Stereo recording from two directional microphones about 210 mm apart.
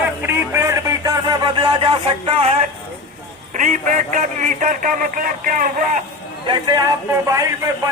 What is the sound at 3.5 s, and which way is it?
A man's voice, 35° right (ahead or behind).